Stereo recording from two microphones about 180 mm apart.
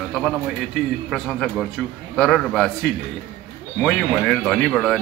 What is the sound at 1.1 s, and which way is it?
Speech, centre (ahead or behind).